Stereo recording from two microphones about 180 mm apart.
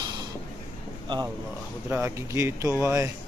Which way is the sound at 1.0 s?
25° right (ahead or behind).